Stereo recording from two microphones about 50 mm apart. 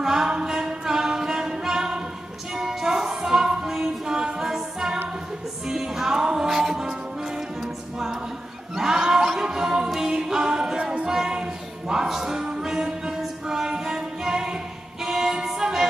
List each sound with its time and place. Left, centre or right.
0.0 s music: centre
10.8 s music: right
11.1 s music: centre
15.0 s a capella: centre